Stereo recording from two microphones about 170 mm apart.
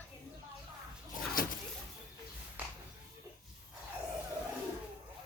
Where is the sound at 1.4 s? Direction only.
55° left (ahead or behind).